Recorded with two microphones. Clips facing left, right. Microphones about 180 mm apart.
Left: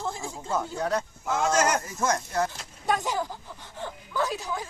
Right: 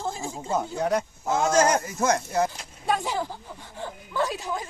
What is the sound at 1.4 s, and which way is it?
Speech, 35° right (ahead or behind).